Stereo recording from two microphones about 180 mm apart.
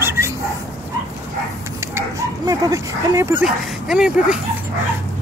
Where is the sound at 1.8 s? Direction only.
15° right (ahead or behind).